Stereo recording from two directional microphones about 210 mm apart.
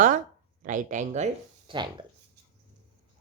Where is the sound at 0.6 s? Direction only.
35° right (ahead or behind).